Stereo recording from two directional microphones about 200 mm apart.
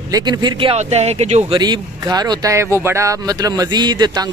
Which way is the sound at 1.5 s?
20° right (ahead or behind).